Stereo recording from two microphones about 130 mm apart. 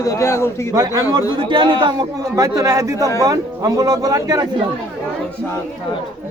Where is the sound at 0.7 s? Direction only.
25° right (ahead or behind).